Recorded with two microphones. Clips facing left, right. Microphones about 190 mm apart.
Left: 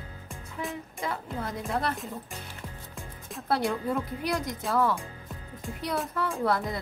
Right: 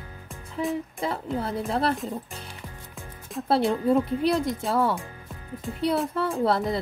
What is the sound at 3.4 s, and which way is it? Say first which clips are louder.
A woman's voice: right 6 dB; 30° right (ahead or behind).